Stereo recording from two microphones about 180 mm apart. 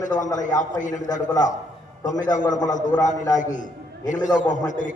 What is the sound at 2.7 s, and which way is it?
A man's voice, 45° left (ahead or behind).